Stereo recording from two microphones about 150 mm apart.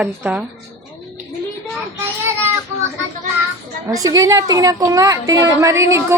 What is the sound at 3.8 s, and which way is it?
A woman's voice, 25° right (ahead or behind).